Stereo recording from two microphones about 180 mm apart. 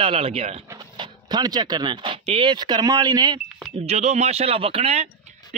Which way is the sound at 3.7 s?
35° right (ahead or behind).